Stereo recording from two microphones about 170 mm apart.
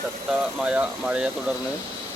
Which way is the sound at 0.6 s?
5° right (ahead or behind).